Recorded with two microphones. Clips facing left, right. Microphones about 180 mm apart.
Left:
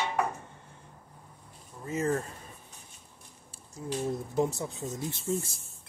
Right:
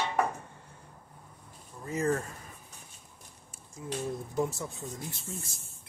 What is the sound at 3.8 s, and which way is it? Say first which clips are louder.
Speech: left 3 dB; 30° left (ahead or behind).